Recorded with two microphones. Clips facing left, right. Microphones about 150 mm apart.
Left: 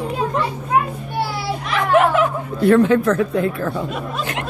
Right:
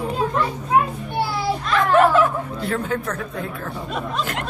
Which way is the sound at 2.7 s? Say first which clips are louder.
Left 13 dB; 90° left.